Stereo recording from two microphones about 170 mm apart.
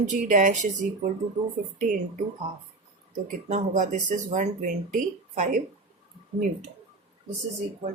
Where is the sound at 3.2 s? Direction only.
45° right (ahead or behind).